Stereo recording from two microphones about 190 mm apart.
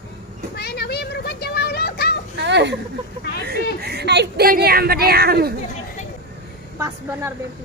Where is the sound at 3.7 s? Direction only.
55° right (ahead or behind).